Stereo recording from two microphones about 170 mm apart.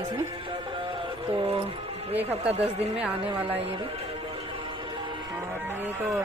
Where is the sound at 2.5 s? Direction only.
35° right (ahead or behind).